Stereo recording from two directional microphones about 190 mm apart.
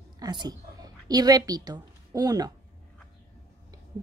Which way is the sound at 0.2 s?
20° right (ahead or behind).